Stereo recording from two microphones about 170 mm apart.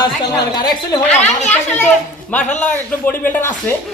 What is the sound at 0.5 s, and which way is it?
Speech, 25° left (ahead or behind).